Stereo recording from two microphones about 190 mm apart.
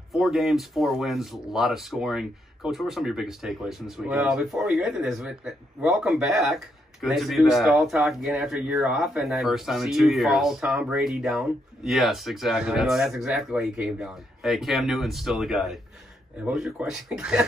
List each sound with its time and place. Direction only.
0.1 s speech: centre (ahead or behind)